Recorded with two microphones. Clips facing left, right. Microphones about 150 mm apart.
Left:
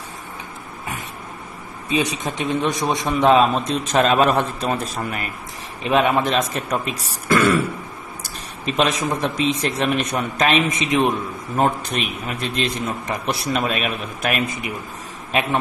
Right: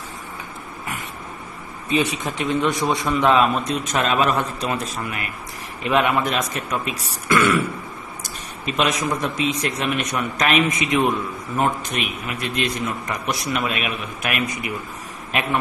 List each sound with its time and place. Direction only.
1.9 s a man's voice: 15° left (ahead or behind); by 5.3 s 35° left (ahead or behind)
5.9 s a man's voice: 20° left (ahead or behind)
8.6 s a man's voice: 30° left (ahead or behind)
11.5 s a man's voice: 35° left (ahead or behind)